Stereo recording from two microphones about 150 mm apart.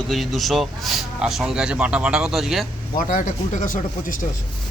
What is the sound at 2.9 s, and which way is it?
Speech, 60° left (ahead or behind).